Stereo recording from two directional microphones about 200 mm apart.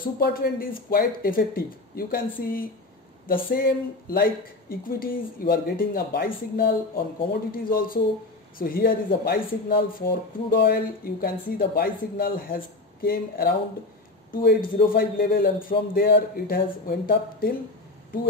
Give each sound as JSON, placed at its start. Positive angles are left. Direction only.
{"t": 0.2, "sound": "speech", "side_deg": 45}